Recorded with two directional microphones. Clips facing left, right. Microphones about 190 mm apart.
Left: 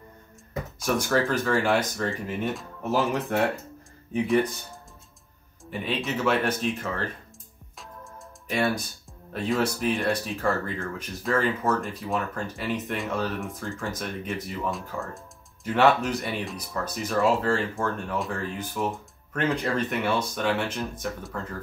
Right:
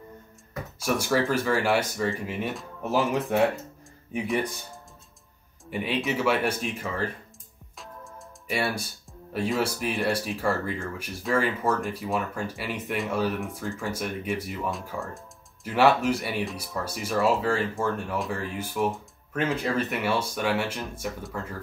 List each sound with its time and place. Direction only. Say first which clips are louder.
0.7 s speech: even; 10° right (ahead or behind)
6.1 s speech: left 2 dB; 10° right (ahead or behind)
7.7 s music: right 1 dB; centre (ahead or behind)
9.3 s speech: left 1 dB; 10° right (ahead or behind)